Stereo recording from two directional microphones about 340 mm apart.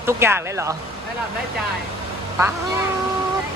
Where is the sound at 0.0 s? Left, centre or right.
Centre.